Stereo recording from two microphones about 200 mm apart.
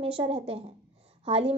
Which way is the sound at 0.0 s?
30° right (ahead or behind).